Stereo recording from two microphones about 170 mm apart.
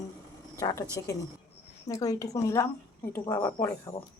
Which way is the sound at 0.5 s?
20° left (ahead or behind).